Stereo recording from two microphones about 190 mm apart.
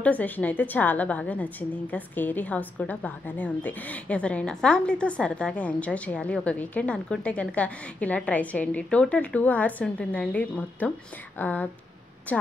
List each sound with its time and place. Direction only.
0.0 s a woman's voice: 10° left (ahead or behind)